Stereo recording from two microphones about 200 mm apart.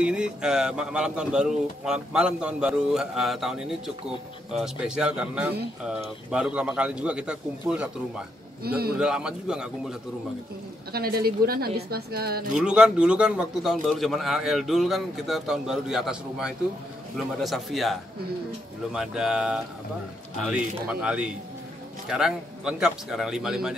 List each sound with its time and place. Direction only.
0.0 s a man's voice: 5° right (ahead or behind)
8.6 s speech: 50° right (ahead or behind)
8.9 s a man's voice: 5° right (ahead or behind)
10.9 s speech: 50° right (ahead or behind)
12.5 s a man's voice: 5° right (ahead or behind)
18.9 s a man's voice: 5° right (ahead or behind)